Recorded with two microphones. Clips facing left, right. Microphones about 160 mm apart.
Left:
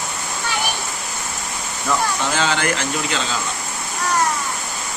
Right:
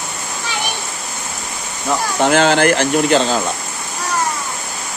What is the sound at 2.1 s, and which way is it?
Speech, 60° right (ahead or behind).